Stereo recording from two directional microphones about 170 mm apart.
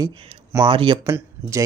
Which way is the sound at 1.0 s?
15° right (ahead or behind).